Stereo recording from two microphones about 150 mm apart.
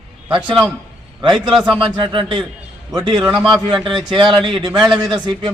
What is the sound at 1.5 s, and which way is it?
Speech, 5° right (ahead or behind).